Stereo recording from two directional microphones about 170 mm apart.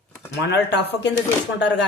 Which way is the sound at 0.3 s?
90° left.